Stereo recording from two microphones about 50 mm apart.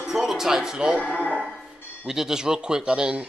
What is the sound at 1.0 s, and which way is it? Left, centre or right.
Speech, left.